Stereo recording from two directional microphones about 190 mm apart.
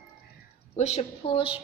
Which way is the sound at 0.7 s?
35° left (ahead or behind).